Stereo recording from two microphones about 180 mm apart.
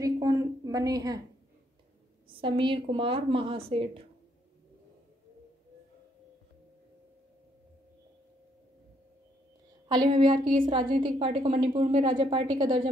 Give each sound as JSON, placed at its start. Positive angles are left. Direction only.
{"t": 0.0, "sound": "a sound", "side_deg": -20}
{"t": 2.2, "sound": "a woman's voice", "side_deg": -30}
{"t": 9.8, "sound": "a woman's voice", "side_deg": -25}